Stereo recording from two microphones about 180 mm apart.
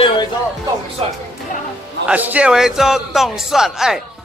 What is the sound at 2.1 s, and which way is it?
Speech, 10° right (ahead or behind).